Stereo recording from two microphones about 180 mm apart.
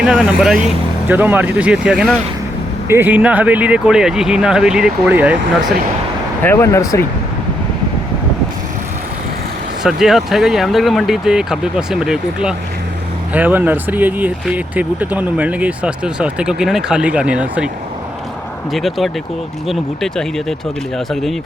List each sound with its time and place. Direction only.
0.0 s speech: 5° right (ahead or behind)
6.4 s speech: 15° left (ahead or behind)
9.8 s speech: centre (ahead or behind)
18.7 s speech: centre (ahead or behind)